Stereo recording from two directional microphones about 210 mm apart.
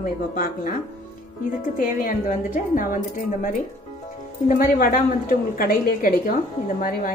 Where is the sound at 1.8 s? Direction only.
40° left (ahead or behind).